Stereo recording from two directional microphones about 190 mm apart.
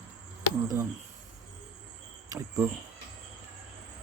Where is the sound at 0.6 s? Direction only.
20° right (ahead or behind).